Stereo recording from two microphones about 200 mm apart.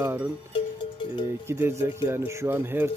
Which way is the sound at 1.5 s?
15° right (ahead or behind).